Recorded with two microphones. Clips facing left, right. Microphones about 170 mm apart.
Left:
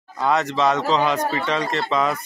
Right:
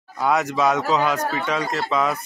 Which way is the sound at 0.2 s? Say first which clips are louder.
Even; 5° right (ahead or behind).